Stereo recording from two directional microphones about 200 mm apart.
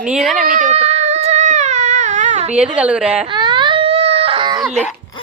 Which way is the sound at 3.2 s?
20° right (ahead or behind).